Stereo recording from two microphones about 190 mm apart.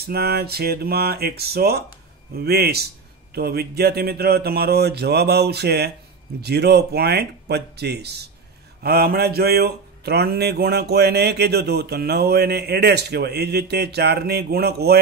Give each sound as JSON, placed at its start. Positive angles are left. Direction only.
{"t": 0.0, "sound": "speech", "side_deg": -55}